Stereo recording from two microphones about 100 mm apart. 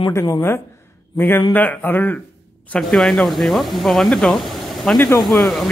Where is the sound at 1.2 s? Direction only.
20° left (ahead or behind).